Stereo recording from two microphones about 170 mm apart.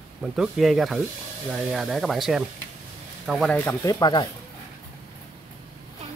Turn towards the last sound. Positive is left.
turn(degrees=25)  # may be behind; listen again after turning